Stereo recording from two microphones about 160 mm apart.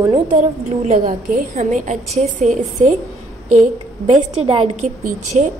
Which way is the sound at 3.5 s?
45° right (ahead or behind).